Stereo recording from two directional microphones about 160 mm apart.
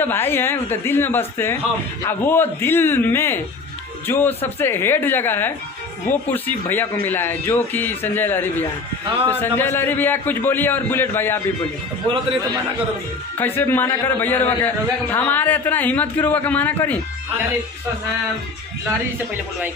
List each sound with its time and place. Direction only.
0.0 s speech: 15° left (ahead or behind)
12.0 s a man's voice: 35° right (ahead or behind)
13.4 s speech: 10° left (ahead or behind)